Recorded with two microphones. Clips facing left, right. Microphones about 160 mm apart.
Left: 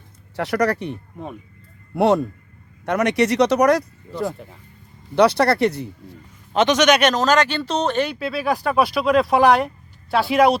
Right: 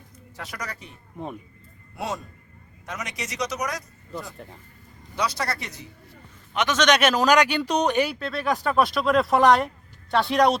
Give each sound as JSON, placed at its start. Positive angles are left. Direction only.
{"t": 0.3, "sound": "speech", "side_deg": 70}
{"t": 2.0, "sound": "speech", "side_deg": 65}
{"t": 6.7, "sound": "speech", "side_deg": 10}
{"t": 6.9, "sound": "speech", "side_deg": -5}
{"t": 8.1, "sound": "speech", "side_deg": 5}